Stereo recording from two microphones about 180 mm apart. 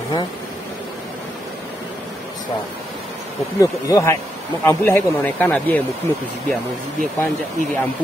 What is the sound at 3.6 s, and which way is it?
Speech, 15° left (ahead or behind).